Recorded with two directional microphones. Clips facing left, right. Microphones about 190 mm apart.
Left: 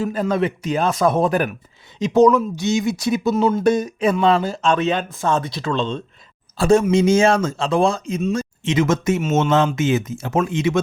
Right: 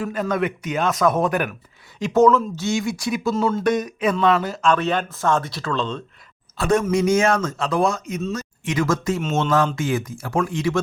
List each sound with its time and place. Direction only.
0.0 s speech: 30° left (ahead or behind)
2.0 s speech: 15° left (ahead or behind)